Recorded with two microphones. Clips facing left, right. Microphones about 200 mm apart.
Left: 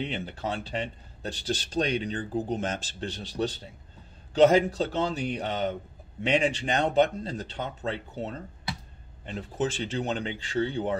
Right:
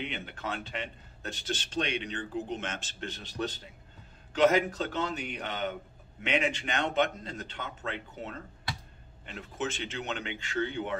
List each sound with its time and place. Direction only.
0.0 s speech: 30° left (ahead or behind)